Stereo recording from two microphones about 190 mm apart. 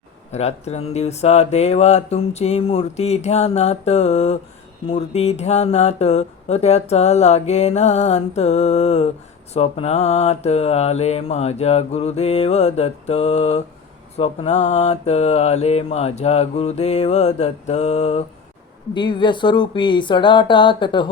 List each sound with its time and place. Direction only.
0.3 s speech: 35° left (ahead or behind)
18.9 s speech: 25° left (ahead or behind)